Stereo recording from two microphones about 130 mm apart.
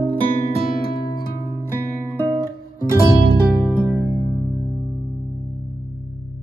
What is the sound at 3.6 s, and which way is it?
Music, 10° right (ahead or behind).